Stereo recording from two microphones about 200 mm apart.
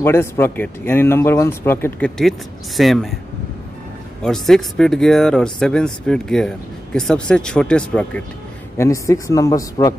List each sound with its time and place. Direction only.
0.0 s speech: 10° left (ahead or behind)
4.2 s speech: centre (ahead or behind); by 9.9 s 20° left (ahead or behind)